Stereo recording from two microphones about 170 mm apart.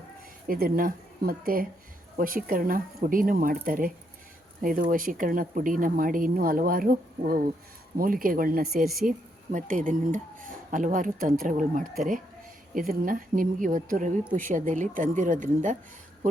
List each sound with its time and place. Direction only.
0.4 s a woman's voice: 55° right (ahead or behind)